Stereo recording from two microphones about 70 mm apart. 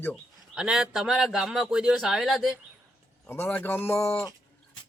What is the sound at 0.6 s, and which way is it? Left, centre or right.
A man's voice, centre.